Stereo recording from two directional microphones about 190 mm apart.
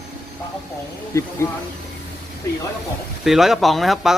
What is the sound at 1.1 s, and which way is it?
Speech, 15° left (ahead or behind).